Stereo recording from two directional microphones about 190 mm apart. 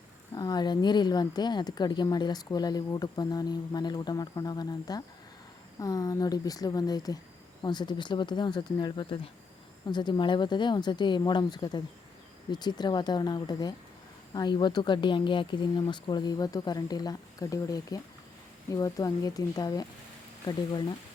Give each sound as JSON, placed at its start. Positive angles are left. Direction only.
{"t": 0.3, "sound": "speech", "side_deg": 20}